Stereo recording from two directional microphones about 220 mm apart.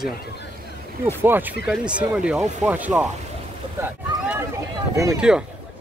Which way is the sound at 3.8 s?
10° right (ahead or behind).